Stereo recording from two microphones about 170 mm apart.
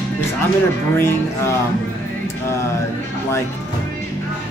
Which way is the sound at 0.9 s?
15° left (ahead or behind).